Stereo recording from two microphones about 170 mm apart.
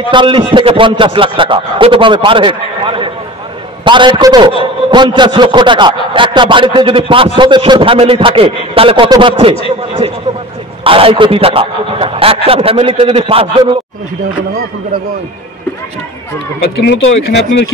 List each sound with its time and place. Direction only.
0.1 s a man's voice: 30° right (ahead or behind)
16.6 s speech: 80° left